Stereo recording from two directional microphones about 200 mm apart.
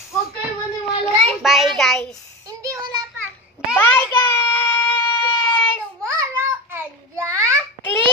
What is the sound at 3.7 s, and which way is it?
Child singing, 10° left (ahead or behind).